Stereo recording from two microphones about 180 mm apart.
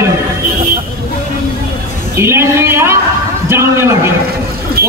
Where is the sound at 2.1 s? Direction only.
15° right (ahead or behind).